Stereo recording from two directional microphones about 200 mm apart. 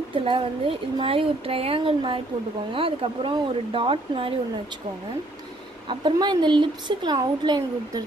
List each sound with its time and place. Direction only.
0.1 s a woman's voice: 25° right (ahead or behind)
5.9 s a woman's voice: 20° right (ahead or behind)